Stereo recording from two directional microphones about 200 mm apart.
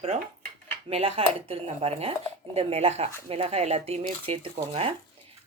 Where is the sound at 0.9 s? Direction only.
30° right (ahead or behind).